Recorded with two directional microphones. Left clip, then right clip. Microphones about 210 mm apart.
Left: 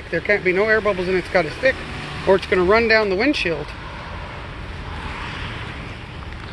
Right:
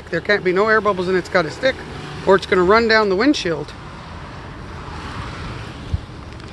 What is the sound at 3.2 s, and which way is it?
Speech, 90° right.